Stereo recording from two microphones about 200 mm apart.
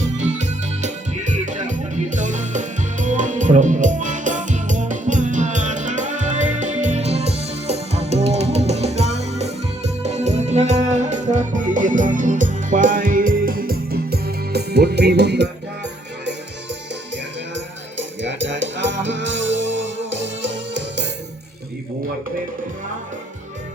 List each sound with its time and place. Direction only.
0.2 s music: 35° right (ahead or behind); by 15.4 s 55° right (ahead or behind)
17.5 s music: 65° right (ahead or behind)